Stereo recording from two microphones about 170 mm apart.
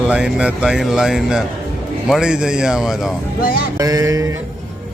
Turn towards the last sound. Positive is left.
turn(degrees=-20)  # may be behind; listen again after turning